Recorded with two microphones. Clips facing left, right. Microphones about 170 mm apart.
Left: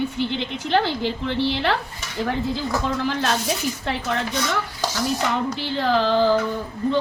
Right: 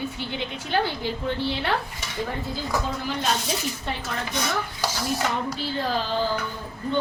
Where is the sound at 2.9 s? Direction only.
90° left.